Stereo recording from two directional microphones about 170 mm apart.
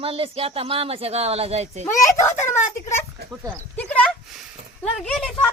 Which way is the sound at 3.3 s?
10° right (ahead or behind).